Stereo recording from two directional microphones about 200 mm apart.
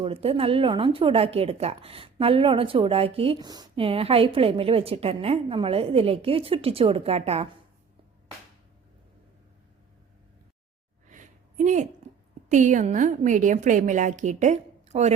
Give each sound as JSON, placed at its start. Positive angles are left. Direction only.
{"t": 0.0, "sound": "speech", "side_deg": -30}
{"t": 11.1, "sound": "a sound", "side_deg": -40}
{"t": 12.5, "sound": "a woman's voice", "side_deg": -40}